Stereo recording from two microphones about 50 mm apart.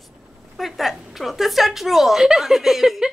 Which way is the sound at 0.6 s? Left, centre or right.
Centre.